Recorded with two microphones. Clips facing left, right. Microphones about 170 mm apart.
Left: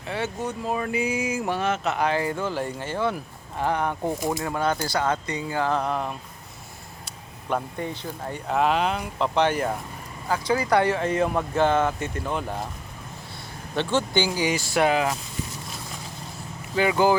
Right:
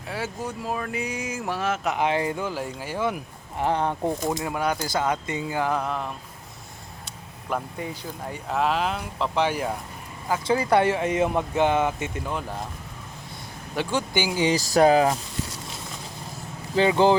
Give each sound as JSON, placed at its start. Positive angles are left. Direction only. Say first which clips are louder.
{"t": 0.1, "sound": "speech", "louder": "left 2 dB", "side_deg": -5}
{"t": 2.4, "sound": "speech", "louder": "left 2 dB", "side_deg": -5}
{"t": 3.6, "sound": "speech", "louder": "right 1 dB", "side_deg": -25}
{"t": 4.4, "sound": "speech", "louder": "left 1 dB", "side_deg": -15}
{"t": 5.8, "sound": "speech", "louder": "left 2 dB", "side_deg": 0}
{"t": 7.5, "sound": "speech", "louder": "left 2 dB", "side_deg": -5}
{"t": 10.2, "sound": "speech", "louder": "right 1 dB", "side_deg": -20}
{"t": 12.3, "sound": "speech", "louder": "left 2 dB", "side_deg": 0}
{"t": 13.7, "sound": "speech", "louder": "left 2 dB", "side_deg": -15}
{"t": 14.4, "sound": "speech", "louder": "right 8 dB", "side_deg": -35}
{"t": 16.7, "sound": "speech", "louder": "right 2 dB", "side_deg": -25}